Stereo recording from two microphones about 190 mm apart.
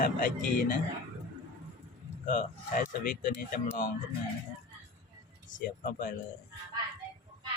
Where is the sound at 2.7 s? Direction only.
45° left (ahead or behind).